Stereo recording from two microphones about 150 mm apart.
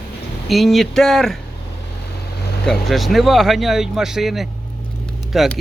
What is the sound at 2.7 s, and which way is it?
Speech, centre (ahead or behind).